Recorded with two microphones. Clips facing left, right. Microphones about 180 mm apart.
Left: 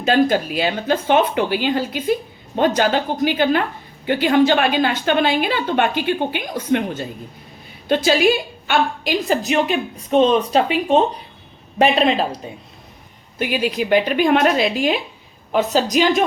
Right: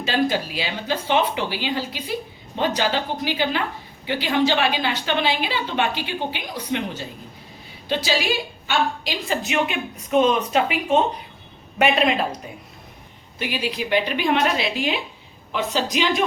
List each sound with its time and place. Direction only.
0.0 s a woman's voice: 50° left (ahead or behind); by 12.2 s 30° left (ahead or behind)
13.4 s a woman's voice: 50° left (ahead or behind)